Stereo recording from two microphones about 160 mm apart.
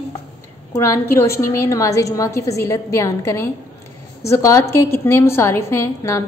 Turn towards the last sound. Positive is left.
turn(degrees=15)  # may be behind; listen again after turning